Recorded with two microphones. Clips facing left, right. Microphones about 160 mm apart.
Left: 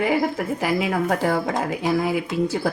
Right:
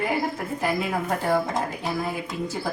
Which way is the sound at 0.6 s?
90° left.